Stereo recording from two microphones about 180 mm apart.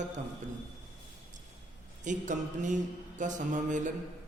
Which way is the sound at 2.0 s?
45° right (ahead or behind).